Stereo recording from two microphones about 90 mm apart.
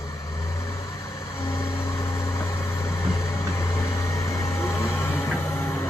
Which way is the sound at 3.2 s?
35° left (ahead or behind).